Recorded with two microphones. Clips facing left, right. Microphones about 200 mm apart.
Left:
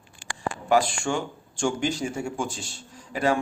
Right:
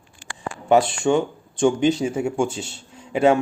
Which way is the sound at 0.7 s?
25° right (ahead or behind).